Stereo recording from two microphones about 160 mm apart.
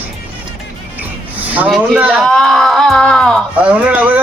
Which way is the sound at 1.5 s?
10° right (ahead or behind).